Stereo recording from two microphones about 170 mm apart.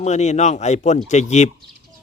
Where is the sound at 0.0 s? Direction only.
40° left (ahead or behind).